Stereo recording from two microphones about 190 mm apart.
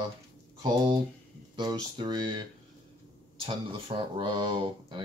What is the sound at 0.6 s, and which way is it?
Speech, 20° right (ahead or behind).